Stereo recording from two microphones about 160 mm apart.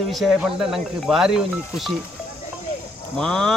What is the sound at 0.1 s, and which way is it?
Speech, centre (ahead or behind).